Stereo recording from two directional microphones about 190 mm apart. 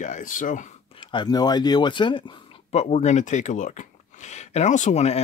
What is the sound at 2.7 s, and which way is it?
Speech, 35° left (ahead or behind).